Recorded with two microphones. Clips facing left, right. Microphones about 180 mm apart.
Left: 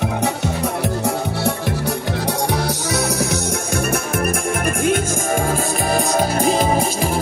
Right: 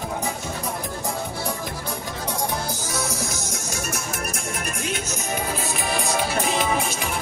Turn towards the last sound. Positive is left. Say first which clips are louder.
# left 6 dB
turn(degrees=35)  # may be behind; listen again after turning